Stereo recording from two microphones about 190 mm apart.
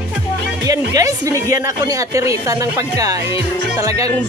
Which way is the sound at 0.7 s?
20° right (ahead or behind).